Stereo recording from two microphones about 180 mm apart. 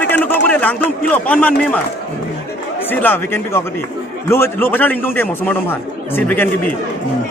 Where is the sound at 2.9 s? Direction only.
10° left (ahead or behind).